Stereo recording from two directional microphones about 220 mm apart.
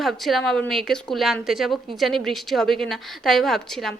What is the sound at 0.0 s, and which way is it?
A woman's voice, centre (ahead or behind).